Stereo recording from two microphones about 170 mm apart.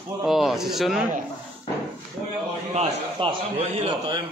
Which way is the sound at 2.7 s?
35° right (ahead or behind).